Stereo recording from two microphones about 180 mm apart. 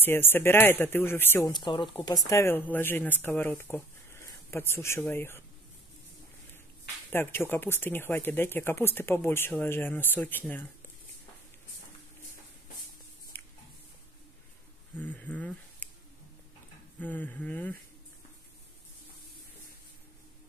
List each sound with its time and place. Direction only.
0.0 s speech: 10° left (ahead or behind)
1.5 s speech: 25° left (ahead or behind)
2.2 s speech: 15° left (ahead or behind)
7.1 s speech: 10° left (ahead or behind)
13.3 s a sound: 10° left (ahead or behind)
15.0 s a sound: 10° left (ahead or behind)
17.0 s speech: 10° left (ahead or behind)